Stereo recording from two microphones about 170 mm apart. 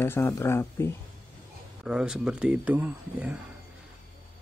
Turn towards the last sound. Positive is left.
turn(degrees=-10)  # may be behind; listen again after turning